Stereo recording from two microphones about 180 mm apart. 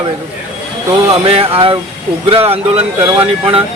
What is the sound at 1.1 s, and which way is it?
Speech, 30° right (ahead or behind).